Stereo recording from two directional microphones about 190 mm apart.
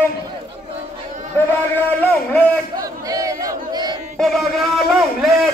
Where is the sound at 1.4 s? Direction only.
10° left (ahead or behind).